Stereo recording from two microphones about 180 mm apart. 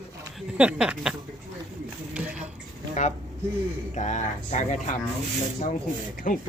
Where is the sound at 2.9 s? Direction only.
40° left (ahead or behind).